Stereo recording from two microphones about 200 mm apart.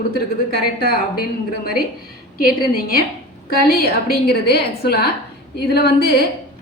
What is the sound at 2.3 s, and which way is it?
A woman's voice, 45° left (ahead or behind).